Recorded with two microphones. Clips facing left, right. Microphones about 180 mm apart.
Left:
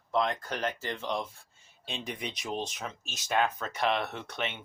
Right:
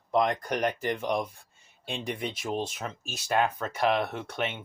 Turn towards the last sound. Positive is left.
turn(degrees=-10)  # may be behind; listen again after turning